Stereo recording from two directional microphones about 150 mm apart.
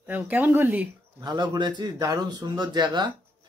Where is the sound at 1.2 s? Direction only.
25° right (ahead or behind).